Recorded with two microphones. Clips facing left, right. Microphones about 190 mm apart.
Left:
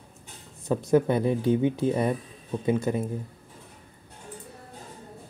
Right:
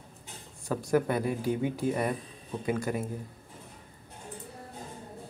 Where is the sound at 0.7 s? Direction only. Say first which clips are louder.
Left 5 dB; 20° left (ahead or behind).